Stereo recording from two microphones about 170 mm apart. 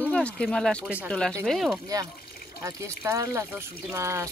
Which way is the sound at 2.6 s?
20° right (ahead or behind).